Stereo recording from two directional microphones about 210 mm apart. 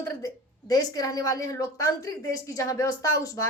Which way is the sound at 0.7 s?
15° left (ahead or behind).